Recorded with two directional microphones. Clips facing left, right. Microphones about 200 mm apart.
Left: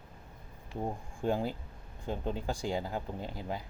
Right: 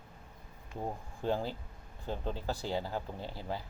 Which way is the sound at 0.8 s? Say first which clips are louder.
Left 3 dB; 10° left (ahead or behind).